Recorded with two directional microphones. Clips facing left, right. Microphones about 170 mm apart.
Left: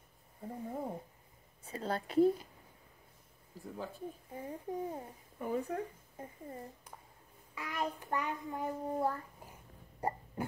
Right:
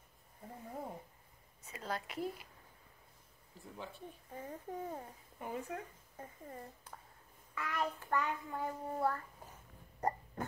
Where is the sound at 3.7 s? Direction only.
40° left (ahead or behind).